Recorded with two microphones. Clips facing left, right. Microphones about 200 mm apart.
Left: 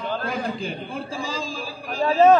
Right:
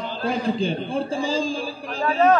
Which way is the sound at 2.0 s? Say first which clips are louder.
Left 3 dB; 25° left (ahead or behind).